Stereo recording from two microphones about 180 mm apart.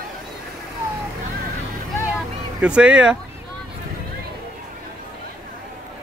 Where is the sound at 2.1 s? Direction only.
5° right (ahead or behind).